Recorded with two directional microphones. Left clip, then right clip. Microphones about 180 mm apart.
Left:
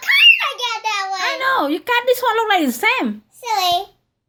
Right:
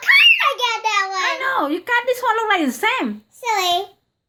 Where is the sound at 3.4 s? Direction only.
10° right (ahead or behind).